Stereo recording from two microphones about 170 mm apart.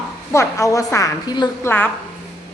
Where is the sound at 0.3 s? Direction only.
15° left (ahead or behind).